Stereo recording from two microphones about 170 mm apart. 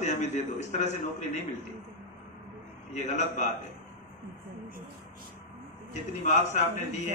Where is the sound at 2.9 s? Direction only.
45° left (ahead or behind).